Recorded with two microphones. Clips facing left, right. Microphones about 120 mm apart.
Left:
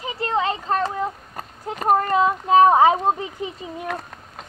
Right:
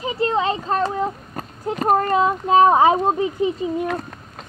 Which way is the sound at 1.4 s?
5° left (ahead or behind).